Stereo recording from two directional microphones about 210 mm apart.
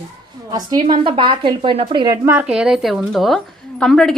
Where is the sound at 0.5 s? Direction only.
20° right (ahead or behind).